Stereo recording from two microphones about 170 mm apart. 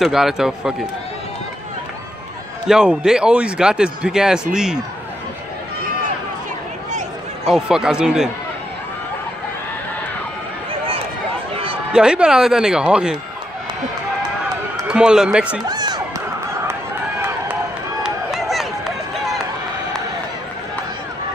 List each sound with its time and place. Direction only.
0.0 s a man's voice: centre (ahead or behind)
2.7 s a man's voice: 5° right (ahead or behind)
7.4 s a man's voice: 5° right (ahead or behind)
11.9 s a man's voice: 5° right (ahead or behind)
14.9 s a man's voice: 5° right (ahead or behind)
15.7 s crowd: 25° right (ahead or behind)
18.0 s run: centre (ahead or behind)